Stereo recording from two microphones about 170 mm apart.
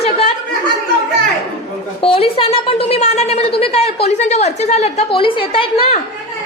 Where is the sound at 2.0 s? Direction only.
35° left (ahead or behind).